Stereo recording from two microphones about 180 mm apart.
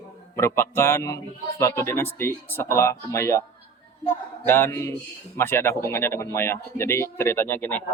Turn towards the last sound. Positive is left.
turn(degrees=10)  # may be behind; listen again after turning